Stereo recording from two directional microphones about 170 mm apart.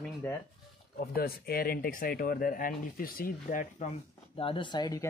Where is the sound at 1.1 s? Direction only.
60° left (ahead or behind).